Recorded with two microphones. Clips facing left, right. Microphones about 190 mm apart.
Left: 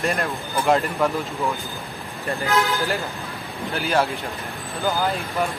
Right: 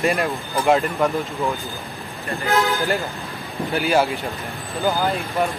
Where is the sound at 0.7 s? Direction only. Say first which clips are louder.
Right 2 dB; centre (ahead or behind).